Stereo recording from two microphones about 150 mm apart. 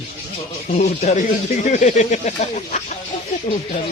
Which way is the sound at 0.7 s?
45° left (ahead or behind).